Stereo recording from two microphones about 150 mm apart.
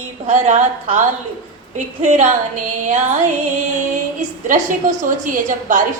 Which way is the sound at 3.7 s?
55° right (ahead or behind).